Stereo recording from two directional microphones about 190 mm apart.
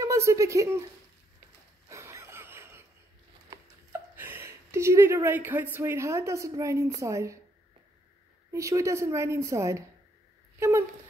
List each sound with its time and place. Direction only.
0.0 s speech: 15° right (ahead or behind)
1.9 s a sound: 15° right (ahead or behind)
3.4 s a woman's voice: 10° right (ahead or behind)
8.5 s a woman's voice: 15° right (ahead or behind)